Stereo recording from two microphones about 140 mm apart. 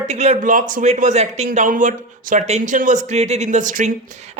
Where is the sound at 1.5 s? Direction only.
75° right (ahead or behind).